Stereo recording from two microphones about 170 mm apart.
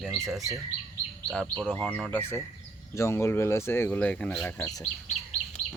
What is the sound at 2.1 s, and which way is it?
Speech, 15° left (ahead or behind).